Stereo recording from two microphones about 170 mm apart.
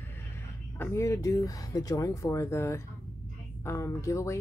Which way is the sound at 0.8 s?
15° left (ahead or behind).